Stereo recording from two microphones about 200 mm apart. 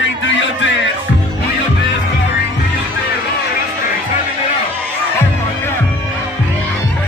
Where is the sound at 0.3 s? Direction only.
70° left (ahead or behind).